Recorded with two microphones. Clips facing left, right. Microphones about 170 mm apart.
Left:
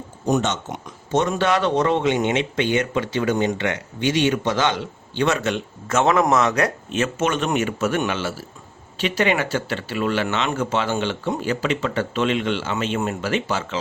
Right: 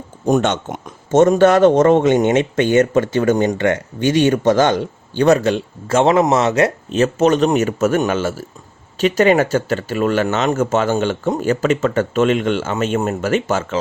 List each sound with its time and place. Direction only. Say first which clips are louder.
0.3 s speech: right 5 dB; 55° right (ahead or behind)